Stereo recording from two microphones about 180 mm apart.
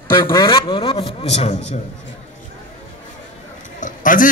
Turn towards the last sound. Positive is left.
turn(degrees=45)  # may be behind; listen again after turning